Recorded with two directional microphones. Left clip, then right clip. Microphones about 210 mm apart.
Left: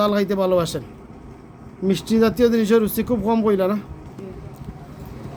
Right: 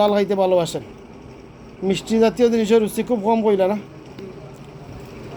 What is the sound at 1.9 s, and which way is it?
Speech, 80° left.